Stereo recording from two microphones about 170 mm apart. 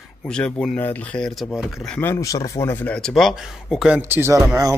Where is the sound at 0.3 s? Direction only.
5° left (ahead or behind).